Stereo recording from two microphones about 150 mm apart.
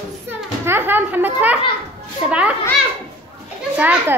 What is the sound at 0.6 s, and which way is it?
Speech, 15° right (ahead or behind).